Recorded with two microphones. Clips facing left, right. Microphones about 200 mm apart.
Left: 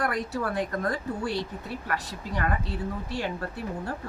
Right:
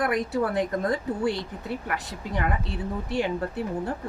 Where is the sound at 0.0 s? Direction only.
20° right (ahead or behind).